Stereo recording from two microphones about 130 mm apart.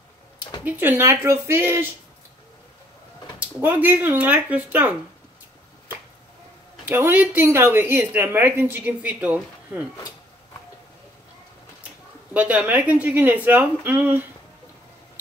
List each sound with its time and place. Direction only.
0.7 s a woman's voice: 15° right (ahead or behind)
3.3 s a woman's voice: 15° right (ahead or behind)
6.9 s a woman's voice: 15° right (ahead or behind)
12.4 s a woman's voice: 10° right (ahead or behind)